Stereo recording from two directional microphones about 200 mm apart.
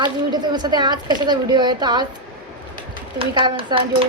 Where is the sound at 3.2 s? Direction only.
25° right (ahead or behind).